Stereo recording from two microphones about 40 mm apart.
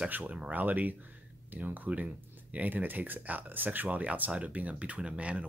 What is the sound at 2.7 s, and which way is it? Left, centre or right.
Speech, right.